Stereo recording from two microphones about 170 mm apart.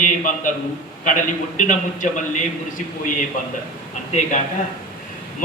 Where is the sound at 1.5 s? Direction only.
50° left (ahead or behind).